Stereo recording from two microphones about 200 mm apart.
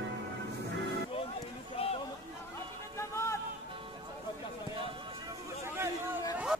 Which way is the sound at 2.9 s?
15° left (ahead or behind).